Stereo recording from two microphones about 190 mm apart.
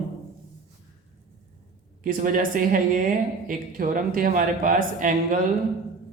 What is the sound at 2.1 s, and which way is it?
A man's voice, 45° right (ahead or behind).